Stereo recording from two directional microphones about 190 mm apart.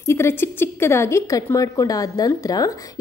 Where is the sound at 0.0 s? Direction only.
15° left (ahead or behind).